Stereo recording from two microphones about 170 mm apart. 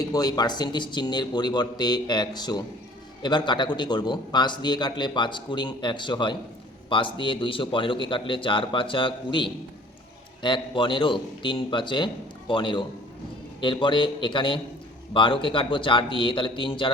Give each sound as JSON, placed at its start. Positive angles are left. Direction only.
{"t": 0.1, "sound": "a man's voice", "side_deg": 25}